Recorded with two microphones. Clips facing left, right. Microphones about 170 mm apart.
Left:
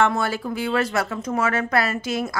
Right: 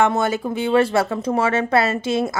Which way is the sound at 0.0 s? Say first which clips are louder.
Right 3 dB; 20° right (ahead or behind).